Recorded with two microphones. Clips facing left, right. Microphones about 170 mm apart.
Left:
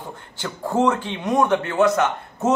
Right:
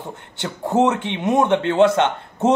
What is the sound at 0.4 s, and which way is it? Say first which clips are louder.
A man's voice: right 3 dB; 20° right (ahead or behind).